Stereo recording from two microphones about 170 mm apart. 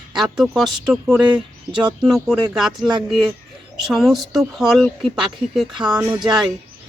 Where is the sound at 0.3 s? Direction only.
Centre (ahead or behind).